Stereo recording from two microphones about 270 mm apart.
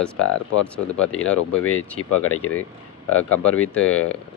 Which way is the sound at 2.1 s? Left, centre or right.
Left.